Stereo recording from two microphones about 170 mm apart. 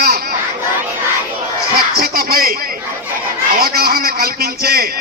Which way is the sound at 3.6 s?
65° right (ahead or behind).